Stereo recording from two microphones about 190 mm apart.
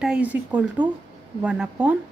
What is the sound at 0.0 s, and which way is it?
A woman's voice, 5° right (ahead or behind).